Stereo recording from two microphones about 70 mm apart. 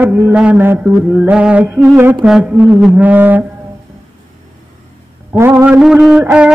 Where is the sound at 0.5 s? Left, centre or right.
Right.